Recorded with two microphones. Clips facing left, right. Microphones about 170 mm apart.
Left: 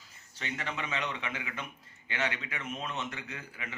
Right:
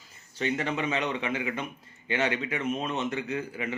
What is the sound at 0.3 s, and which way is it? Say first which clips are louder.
Speech: right 9 dB; 20° right (ahead or behind).